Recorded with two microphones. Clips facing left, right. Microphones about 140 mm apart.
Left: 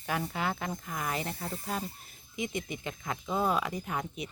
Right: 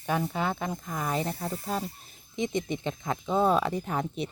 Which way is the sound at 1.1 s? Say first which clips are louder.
Right 5 dB; 20° right (ahead or behind).